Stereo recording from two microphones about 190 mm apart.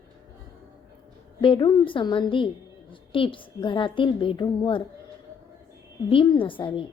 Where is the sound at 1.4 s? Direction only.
25° left (ahead or behind).